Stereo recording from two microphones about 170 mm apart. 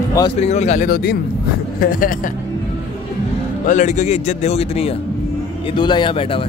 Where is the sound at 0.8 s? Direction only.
65° left (ahead or behind).